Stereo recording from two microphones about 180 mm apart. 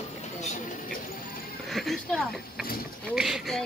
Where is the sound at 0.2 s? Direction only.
40° left (ahead or behind).